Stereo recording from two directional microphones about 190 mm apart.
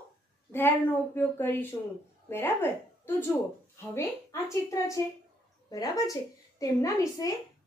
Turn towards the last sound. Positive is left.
turn(degrees=15)  # may be behind; listen again after turning